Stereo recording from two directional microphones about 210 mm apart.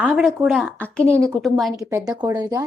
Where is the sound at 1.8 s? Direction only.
15° right (ahead or behind).